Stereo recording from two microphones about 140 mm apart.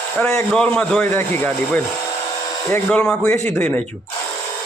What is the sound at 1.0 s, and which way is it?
Speech, 15° left (ahead or behind).